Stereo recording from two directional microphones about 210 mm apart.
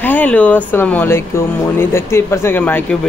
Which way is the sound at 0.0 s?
5° left (ahead or behind).